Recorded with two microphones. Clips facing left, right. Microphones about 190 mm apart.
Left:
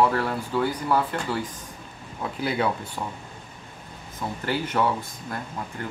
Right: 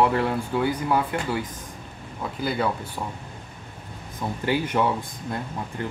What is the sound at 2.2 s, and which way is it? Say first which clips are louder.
Speech: even; centre (ahead or behind).